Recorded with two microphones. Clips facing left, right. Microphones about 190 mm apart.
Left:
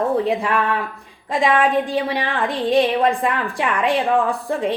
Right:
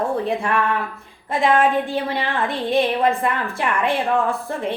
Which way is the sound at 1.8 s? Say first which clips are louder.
Left 2 dB; 15° left (ahead or behind).